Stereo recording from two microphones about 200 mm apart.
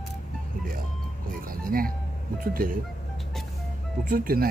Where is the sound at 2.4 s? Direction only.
45° right (ahead or behind).